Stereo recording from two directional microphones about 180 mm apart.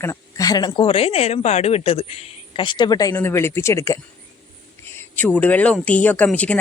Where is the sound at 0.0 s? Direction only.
15° left (ahead or behind).